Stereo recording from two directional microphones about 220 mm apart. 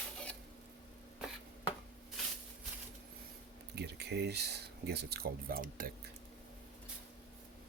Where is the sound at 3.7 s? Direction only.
50° right (ahead or behind).